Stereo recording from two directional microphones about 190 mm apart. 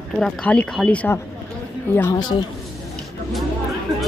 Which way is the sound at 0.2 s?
5° left (ahead or behind).